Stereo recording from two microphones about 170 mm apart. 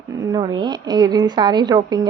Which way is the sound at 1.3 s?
25° right (ahead or behind).